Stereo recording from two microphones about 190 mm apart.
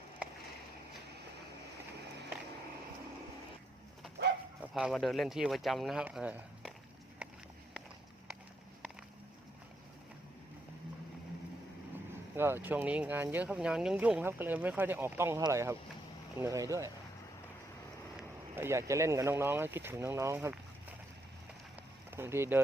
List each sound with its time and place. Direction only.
4.7 s speech: centre (ahead or behind)
7.2 s a sound: 5° right (ahead or behind)
12.4 s speech: 10° right (ahead or behind)
18.5 s speech: 15° right (ahead or behind)
22.1 s speech: 10° right (ahead or behind)